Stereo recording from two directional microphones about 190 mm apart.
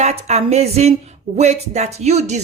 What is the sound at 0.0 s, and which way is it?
Speech, 35° right (ahead or behind).